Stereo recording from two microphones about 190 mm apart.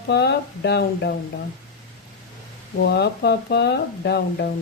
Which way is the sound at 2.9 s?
60° left (ahead or behind).